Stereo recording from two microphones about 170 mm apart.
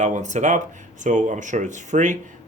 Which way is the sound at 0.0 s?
45° right (ahead or behind).